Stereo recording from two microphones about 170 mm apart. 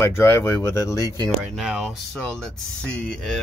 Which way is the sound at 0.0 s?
15° left (ahead or behind).